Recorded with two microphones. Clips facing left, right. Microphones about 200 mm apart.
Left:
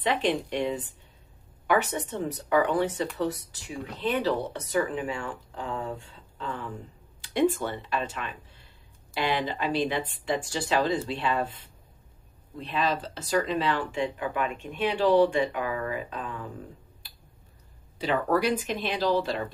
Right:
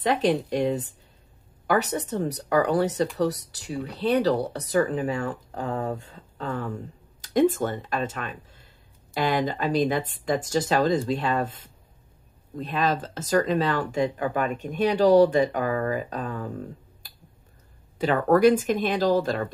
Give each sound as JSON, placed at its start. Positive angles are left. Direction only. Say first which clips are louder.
{"t": 0.0, "sound": "speech", "louder": "right 4 dB", "side_deg": -40}
{"t": 17.0, "sound": "finger snapping", "louder": "right 2 dB", "side_deg": -40}
{"t": 17.9, "sound": "speech", "louder": "right 5 dB", "side_deg": -50}